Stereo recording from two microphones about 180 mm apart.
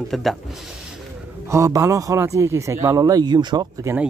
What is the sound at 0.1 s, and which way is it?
Speech, centre (ahead or behind).